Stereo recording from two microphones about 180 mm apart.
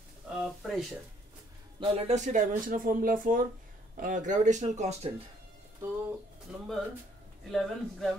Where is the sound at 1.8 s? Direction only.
35° right (ahead or behind).